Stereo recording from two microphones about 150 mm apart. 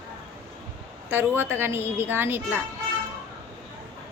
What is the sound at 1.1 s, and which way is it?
A woman's voice, 15° right (ahead or behind).